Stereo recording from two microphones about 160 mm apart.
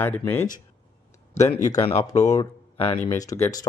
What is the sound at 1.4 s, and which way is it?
Speech, 20° left (ahead or behind).